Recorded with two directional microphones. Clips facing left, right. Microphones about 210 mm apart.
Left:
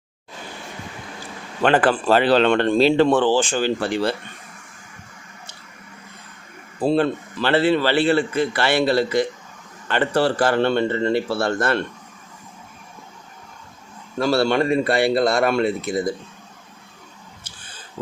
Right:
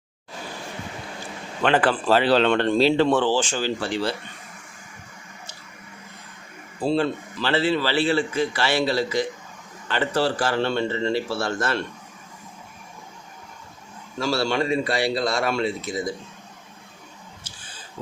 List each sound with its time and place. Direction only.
1.6 s speech: 50° left (ahead or behind)
6.8 s a man's voice: 55° left (ahead or behind)
14.2 s a man's voice: 55° left (ahead or behind)